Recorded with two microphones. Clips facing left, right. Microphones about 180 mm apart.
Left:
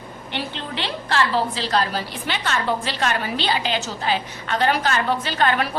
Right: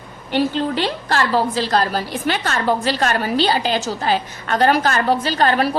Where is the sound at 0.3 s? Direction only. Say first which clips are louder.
Right 11 dB; 40° right (ahead or behind).